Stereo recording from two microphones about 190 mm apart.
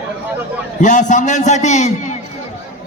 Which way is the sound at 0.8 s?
40° left (ahead or behind).